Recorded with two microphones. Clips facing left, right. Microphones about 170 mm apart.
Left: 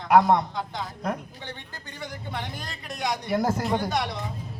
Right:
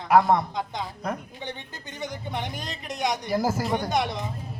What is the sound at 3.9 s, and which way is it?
Speech, 20° right (ahead or behind).